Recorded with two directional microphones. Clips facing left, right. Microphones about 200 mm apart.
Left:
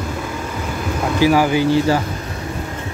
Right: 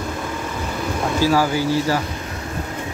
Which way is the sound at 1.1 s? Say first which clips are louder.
Left 4 dB; 15° left (ahead or behind).